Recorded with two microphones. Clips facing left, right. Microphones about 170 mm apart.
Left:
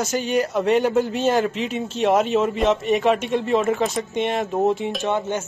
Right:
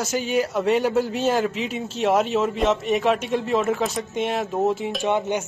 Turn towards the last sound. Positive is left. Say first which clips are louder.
# right 1 dB
turn(degrees=-15)  # may be behind; listen again after turning